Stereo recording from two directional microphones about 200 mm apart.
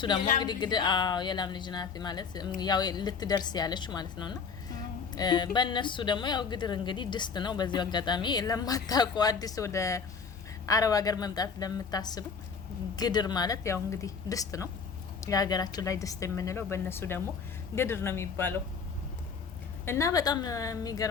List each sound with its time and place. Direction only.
0.3 s a woman's voice: 20° left (ahead or behind)
19.8 s speech: 15° left (ahead or behind)